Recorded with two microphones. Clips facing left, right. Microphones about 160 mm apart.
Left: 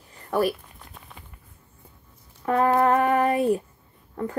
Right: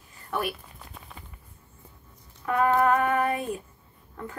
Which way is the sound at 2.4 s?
35° left (ahead or behind).